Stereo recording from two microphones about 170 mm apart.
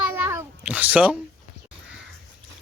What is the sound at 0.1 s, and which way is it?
Cat, 15° right (ahead or behind).